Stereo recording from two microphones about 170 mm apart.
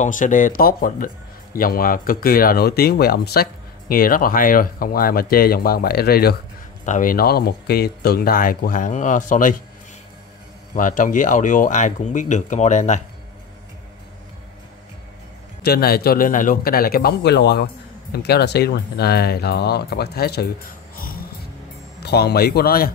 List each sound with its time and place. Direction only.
0.0 s speech: 50° left (ahead or behind)
6.9 s speech: 55° left (ahead or behind)
10.7 s speech: 50° left (ahead or behind)
15.6 s speech: 65° left (ahead or behind)
22.0 s speech: 75° left (ahead or behind)